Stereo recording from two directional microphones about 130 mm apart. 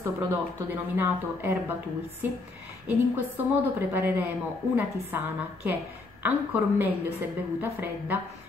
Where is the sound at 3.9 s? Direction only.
15° right (ahead or behind).